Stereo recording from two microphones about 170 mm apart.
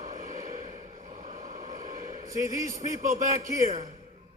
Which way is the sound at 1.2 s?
50° right (ahead or behind).